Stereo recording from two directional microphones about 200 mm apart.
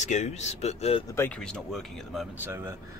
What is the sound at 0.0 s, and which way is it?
Speech, 35° left (ahead or behind).